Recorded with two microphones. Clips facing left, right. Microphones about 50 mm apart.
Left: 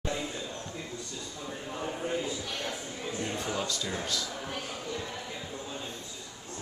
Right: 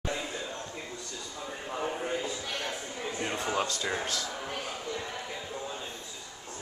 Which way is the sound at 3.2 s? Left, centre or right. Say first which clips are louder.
Right 3 dB; right.